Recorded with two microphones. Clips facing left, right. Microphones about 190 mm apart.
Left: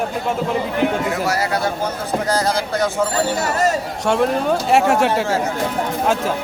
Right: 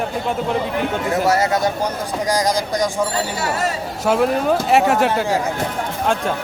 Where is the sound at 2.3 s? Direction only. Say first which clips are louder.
Right 2 dB; 15° right (ahead or behind).